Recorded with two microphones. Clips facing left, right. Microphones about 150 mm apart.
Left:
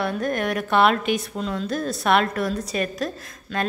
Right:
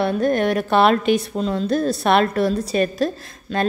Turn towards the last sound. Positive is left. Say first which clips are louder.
# right 4 dB
turn(degrees=-30)  # may be behind; listen again after turning